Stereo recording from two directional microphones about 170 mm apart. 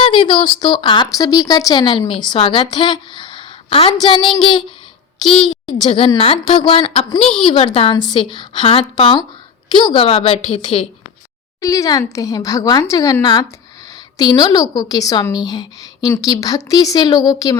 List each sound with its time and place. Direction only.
0.0 s speech: 30° left (ahead or behind)
5.8 s a woman's voice: 30° left (ahead or behind)
11.6 s speech: 20° left (ahead or behind)